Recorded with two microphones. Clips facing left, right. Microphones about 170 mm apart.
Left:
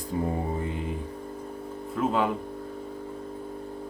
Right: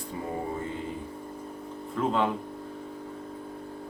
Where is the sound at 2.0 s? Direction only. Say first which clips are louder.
Left 1 dB; 5° left (ahead or behind).